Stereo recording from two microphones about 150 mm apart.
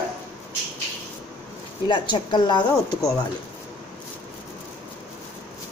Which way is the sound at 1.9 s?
30° left (ahead or behind).